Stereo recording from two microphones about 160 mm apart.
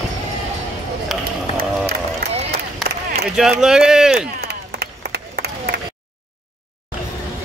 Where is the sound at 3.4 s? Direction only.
5° right (ahead or behind).